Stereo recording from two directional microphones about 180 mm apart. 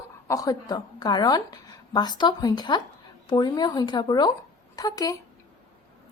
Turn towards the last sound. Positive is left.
turn(degrees=20)  # may be behind; listen again after turning